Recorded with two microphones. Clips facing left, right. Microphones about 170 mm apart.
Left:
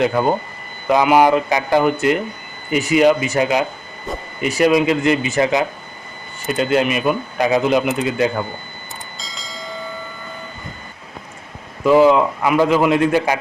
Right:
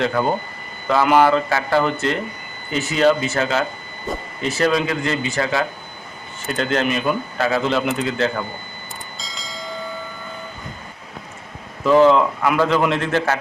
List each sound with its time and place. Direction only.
0.0 s a man's voice: 10° left (ahead or behind)
6.6 s a man's voice: 10° left (ahead or behind)
9.1 s bell: centre (ahead or behind)
11.9 s a man's voice: 10° left (ahead or behind)